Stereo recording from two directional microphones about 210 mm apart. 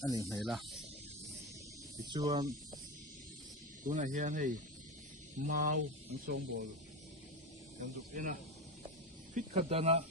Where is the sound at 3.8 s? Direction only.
40° right (ahead or behind).